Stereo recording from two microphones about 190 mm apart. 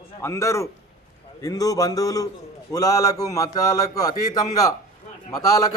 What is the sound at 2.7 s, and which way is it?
A man's voice, 20° left (ahead or behind).